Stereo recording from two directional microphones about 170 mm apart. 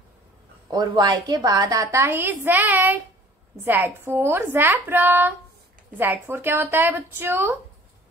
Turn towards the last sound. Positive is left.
turn(degrees=-15)  # may be behind; listen again after turning